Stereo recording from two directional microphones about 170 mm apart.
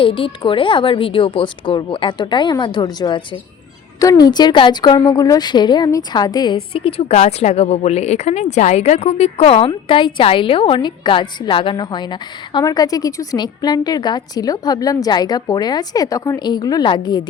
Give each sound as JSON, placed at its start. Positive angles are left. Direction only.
{"t": 0.0, "sound": "a woman's voice", "side_deg": 30}